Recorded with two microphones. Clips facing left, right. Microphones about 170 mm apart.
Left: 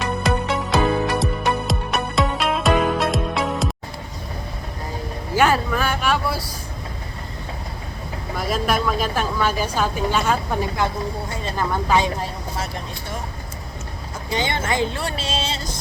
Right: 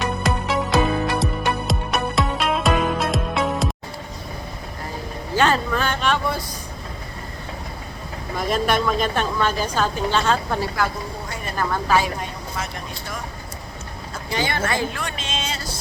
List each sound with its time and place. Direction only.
0.0 s music: centre (ahead or behind)
5.4 s speech: 10° left (ahead or behind)
8.4 s speech: centre (ahead or behind); by 12.1 s 20° left (ahead or behind)
14.3 s speech: 20° left (ahead or behind)
14.9 s music: 35° left (ahead or behind)